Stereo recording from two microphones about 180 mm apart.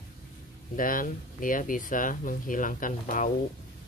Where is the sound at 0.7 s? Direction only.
50° left (ahead or behind).